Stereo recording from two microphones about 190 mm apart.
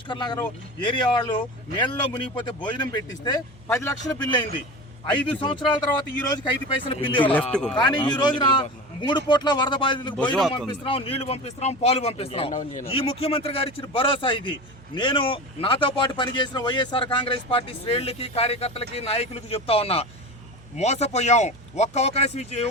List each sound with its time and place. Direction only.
0.1 s a man's voice: 20° left (ahead or behind)
7.3 s speech: 5° left (ahead or behind)
7.8 s speech: 25° left (ahead or behind)